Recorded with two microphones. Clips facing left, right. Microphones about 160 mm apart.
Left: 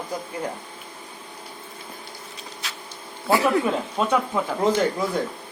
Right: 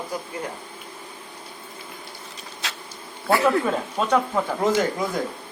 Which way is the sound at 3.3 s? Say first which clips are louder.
Even; 20° left (ahead or behind).